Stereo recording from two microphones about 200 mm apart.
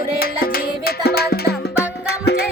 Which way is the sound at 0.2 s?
50° left (ahead or behind).